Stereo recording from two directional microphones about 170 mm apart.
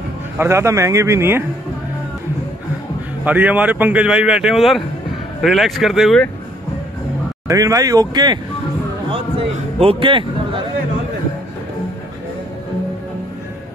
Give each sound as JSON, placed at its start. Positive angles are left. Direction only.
{"t": 0.4, "sound": "speech", "side_deg": -15}
{"t": 3.3, "sound": "speech", "side_deg": -10}
{"t": 7.4, "sound": "speech", "side_deg": -20}
{"t": 9.8, "sound": "speech", "side_deg": -30}